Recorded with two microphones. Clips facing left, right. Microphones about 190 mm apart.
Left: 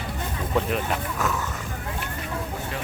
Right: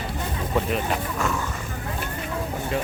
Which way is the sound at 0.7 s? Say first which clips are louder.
Right 1 dB; centre (ahead or behind).